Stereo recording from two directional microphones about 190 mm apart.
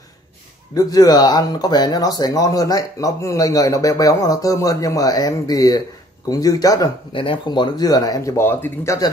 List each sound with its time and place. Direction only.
0.7 s speech: 20° left (ahead or behind)